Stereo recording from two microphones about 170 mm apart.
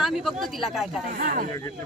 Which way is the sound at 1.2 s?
55° right (ahead or behind).